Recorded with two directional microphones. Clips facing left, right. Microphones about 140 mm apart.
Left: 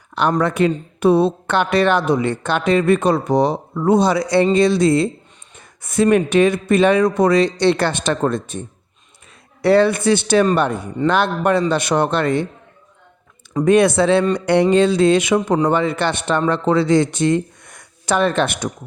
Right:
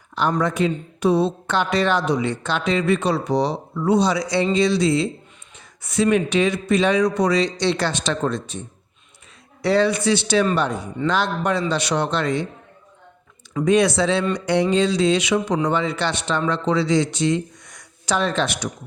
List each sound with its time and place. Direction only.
0.2 s a man's voice: 60° left (ahead or behind)
13.7 s a man's voice: 55° left (ahead or behind)